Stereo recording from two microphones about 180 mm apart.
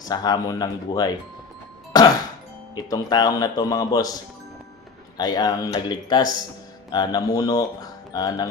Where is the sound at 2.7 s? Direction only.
20° left (ahead or behind).